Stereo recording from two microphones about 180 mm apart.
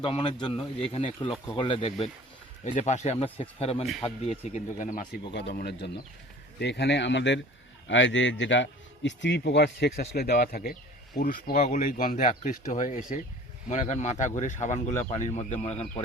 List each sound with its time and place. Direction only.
0.0 s speech: 25° left (ahead or behind); by 5.0 s 45° left (ahead or behind)
5.3 s speech: 70° left (ahead or behind)
7.9 s a man's voice: 90° left; by 15.7 s 35° left (ahead or behind)